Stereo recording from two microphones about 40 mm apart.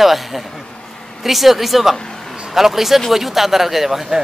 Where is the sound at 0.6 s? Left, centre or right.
Centre.